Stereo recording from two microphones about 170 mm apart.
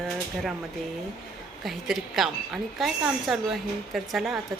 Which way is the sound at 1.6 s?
Centre (ahead or behind).